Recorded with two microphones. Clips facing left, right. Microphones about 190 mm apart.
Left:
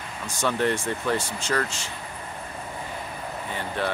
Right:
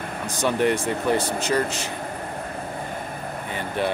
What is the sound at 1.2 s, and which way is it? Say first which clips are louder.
Speech: right 8 dB; 60° right (ahead or behind).